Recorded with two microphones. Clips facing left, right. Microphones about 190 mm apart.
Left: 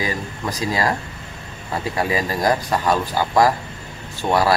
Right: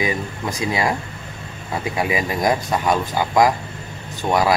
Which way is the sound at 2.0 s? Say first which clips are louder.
Even; 15° right (ahead or behind).